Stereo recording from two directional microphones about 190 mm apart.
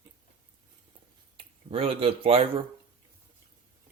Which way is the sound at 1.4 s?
30° right (ahead or behind).